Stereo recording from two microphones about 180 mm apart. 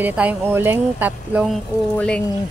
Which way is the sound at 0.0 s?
10° right (ahead or behind).